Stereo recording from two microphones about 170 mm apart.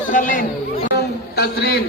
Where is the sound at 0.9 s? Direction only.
65° left (ahead or behind).